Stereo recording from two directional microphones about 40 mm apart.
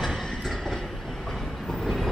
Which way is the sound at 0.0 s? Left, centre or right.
Centre.